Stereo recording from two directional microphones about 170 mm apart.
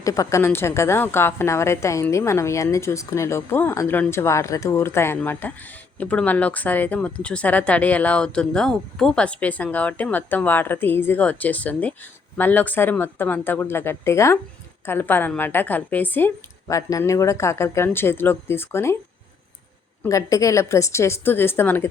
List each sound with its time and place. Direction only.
0.0 s a woman's voice: 20° left (ahead or behind)
20.0 s a woman's voice: 20° left (ahead or behind)